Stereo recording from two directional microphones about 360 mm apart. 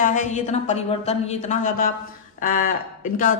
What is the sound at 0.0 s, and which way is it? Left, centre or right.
A woman's voice, left.